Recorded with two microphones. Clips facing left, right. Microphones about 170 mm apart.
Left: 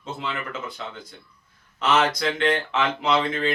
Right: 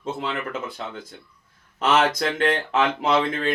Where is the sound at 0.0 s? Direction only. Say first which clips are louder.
Right 3 dB; 55° right (ahead or behind).